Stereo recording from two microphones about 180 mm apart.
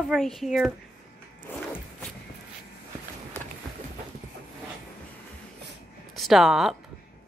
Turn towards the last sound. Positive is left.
turn(degrees=0)  # may be behind; listen again after turning